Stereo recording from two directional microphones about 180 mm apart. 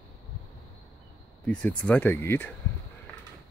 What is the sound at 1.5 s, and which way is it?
Speech, 5° left (ahead or behind).